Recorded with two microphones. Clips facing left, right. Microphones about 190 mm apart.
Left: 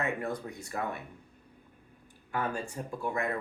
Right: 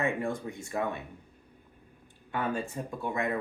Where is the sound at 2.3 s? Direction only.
20° right (ahead or behind).